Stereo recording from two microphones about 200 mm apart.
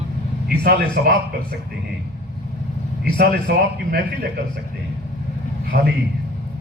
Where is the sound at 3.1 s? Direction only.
50° right (ahead or behind).